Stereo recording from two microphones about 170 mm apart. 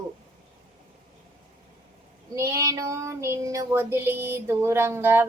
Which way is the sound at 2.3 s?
15° right (ahead or behind).